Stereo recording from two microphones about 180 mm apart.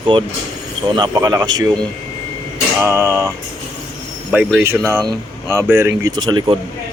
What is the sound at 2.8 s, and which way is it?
Male singing, 15° right (ahead or behind).